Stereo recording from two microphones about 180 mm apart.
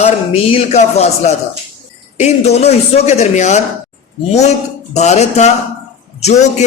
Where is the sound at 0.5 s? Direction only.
35° left (ahead or behind).